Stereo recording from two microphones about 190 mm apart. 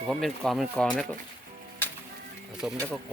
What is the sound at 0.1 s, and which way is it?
Speech, centre (ahead or behind).